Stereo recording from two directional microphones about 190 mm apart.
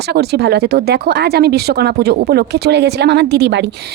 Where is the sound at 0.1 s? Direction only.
60° right (ahead or behind).